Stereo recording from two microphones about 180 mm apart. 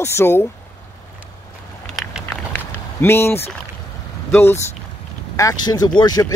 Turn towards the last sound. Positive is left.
turn(degrees=20)  # may be behind; listen again after turning